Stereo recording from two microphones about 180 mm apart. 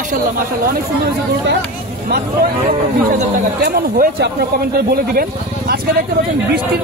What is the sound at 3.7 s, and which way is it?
Speech, 50° right (ahead or behind).